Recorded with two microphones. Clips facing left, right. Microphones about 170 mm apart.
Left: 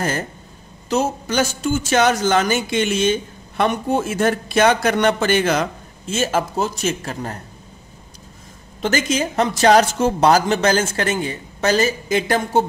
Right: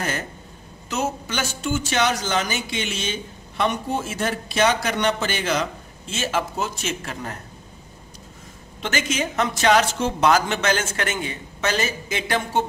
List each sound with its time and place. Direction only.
0.8 s speech: 40° left (ahead or behind)
8.8 s a woman's voice: 40° left (ahead or behind)